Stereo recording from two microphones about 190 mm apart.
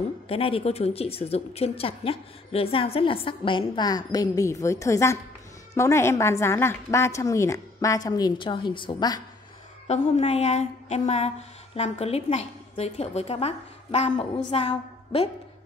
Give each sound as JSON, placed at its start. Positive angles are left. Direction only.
{"t": 0.3, "sound": "a woman's voice", "side_deg": 30}
{"t": 10.0, "sound": "a sound", "side_deg": 35}
{"t": 14.5, "sound": "a woman's voice", "side_deg": 30}